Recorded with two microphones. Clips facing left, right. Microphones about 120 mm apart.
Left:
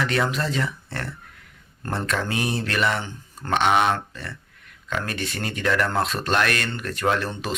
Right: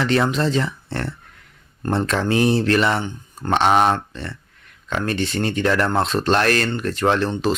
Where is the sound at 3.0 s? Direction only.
20° right (ahead or behind).